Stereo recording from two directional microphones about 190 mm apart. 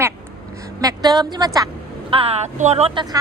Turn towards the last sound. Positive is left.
turn(degrees=-25)  # may be behind; listen again after turning